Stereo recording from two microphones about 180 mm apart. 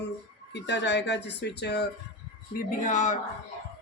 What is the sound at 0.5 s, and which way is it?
Speech, 75° left (ahead or behind).